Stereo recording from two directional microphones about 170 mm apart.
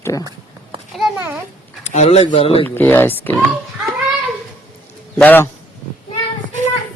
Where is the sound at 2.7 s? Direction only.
10° left (ahead or behind).